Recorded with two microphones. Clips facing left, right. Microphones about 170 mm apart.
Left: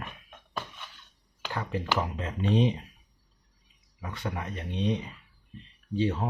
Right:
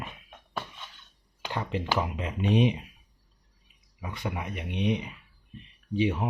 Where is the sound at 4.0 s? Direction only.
10° right (ahead or behind).